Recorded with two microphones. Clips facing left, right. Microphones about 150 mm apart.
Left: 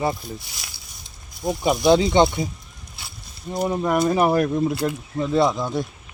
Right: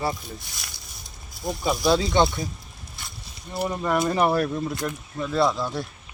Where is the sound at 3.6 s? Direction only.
10° left (ahead or behind).